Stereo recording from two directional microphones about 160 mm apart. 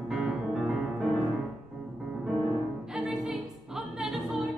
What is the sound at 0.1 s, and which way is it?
Music, 5° right (ahead or behind).